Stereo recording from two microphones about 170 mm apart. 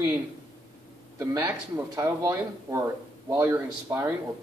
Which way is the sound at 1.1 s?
20° right (ahead or behind).